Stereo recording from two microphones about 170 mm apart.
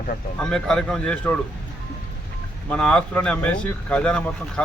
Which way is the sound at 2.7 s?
5° left (ahead or behind).